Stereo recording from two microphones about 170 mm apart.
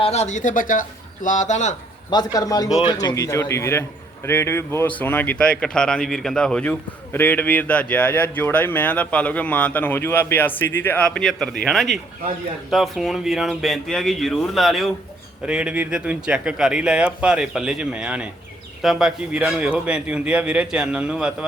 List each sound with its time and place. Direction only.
0.0 s speech: 40° left (ahead or behind)
2.0 s a man's voice: 25° left (ahead or behind); by 21.3 s 5° right (ahead or behind)